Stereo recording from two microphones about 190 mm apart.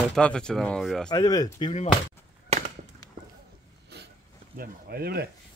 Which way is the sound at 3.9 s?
60° right (ahead or behind).